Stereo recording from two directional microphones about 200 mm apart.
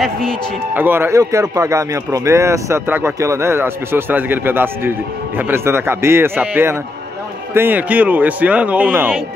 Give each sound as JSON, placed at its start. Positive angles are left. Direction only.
{"t": 0.0, "sound": "speech", "side_deg": 0}
{"t": 0.7, "sound": "speech", "side_deg": -10}